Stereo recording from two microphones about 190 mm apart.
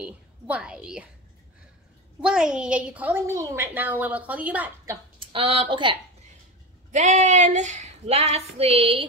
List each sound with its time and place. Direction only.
0.0 s a woman's voice: 5° right (ahead or behind)
2.2 s a woman's voice: 5° right (ahead or behind)
5.3 s a woman's voice: 30° right (ahead or behind)
6.9 s speech: 40° right (ahead or behind)